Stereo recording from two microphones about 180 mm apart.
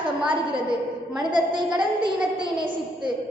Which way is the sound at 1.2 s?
25° right (ahead or behind).